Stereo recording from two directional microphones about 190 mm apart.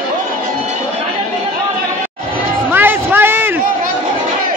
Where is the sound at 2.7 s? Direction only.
10° right (ahead or behind).